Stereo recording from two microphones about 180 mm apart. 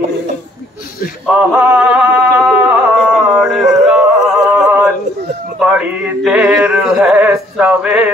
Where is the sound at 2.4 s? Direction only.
5° right (ahead or behind).